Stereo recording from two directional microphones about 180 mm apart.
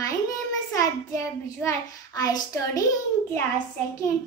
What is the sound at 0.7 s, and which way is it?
A child's voice, 15° left (ahead or behind).